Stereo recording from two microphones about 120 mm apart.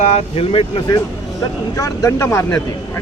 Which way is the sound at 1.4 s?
25° left (ahead or behind).